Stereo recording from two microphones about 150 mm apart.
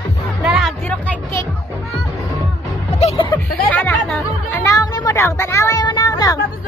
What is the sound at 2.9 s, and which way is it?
Music, 45° left (ahead or behind).